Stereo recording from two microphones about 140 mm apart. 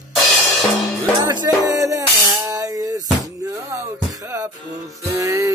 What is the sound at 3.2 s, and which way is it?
Music, 25° right (ahead or behind).